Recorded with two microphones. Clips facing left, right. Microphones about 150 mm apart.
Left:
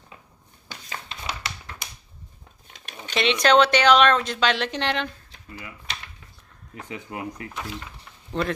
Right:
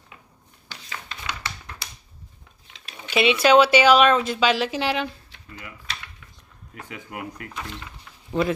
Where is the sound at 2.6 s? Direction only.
50° left (ahead or behind).